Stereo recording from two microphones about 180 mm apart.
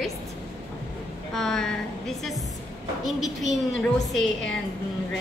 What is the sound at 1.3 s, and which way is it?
Speech, 5° left (ahead or behind).